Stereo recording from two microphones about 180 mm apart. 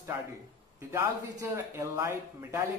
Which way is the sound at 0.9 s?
15° right (ahead or behind).